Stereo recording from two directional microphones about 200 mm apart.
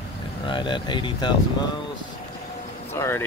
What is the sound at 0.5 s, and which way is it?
Speech, 25° left (ahead or behind).